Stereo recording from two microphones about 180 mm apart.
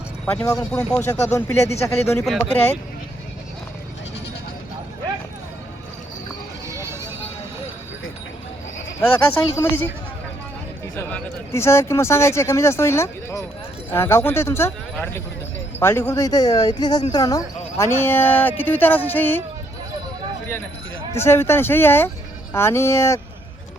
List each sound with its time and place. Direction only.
0.4 s speech: 15° left (ahead or behind)
2.2 s speech: centre (ahead or behind)
6.7 s music: 15° right (ahead or behind)
9.0 s speech: 10° left (ahead or behind)
10.9 s speech: 15° left (ahead or behind)
21.2 s speech: 15° left (ahead or behind)